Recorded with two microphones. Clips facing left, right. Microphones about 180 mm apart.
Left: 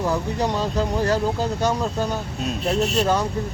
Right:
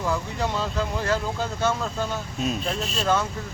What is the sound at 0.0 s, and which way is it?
Speech, 40° left (ahead or behind).